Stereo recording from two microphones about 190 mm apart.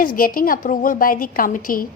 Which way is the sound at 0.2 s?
50° left (ahead or behind).